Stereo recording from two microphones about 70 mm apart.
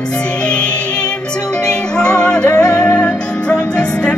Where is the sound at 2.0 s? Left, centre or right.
Centre.